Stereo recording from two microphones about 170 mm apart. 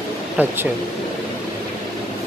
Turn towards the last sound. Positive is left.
turn(degrees=-10)  # may be behind; listen again after turning